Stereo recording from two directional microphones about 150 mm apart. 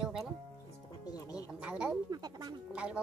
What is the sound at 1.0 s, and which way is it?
Speech, 25° left (ahead or behind).